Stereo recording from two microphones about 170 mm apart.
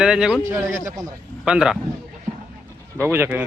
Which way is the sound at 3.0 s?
10° right (ahead or behind).